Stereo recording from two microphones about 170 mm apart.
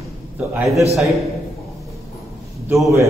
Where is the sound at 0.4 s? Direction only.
10° right (ahead or behind).